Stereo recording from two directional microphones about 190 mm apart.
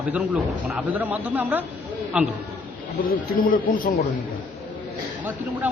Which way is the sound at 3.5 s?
45° left (ahead or behind).